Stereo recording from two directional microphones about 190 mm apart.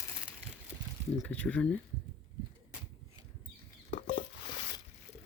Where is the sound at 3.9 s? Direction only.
45° left (ahead or behind).